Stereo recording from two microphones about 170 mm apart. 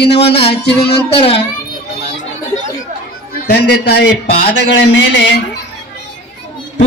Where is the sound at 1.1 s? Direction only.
35° left (ahead or behind).